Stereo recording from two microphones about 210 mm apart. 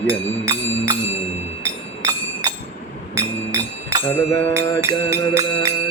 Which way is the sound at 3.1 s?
15° right (ahead or behind).